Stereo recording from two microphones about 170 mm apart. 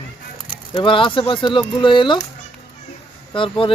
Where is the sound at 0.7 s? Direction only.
30° left (ahead or behind).